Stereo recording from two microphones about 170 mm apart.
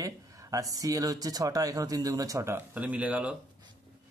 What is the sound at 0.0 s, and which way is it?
Speech, 20° right (ahead or behind).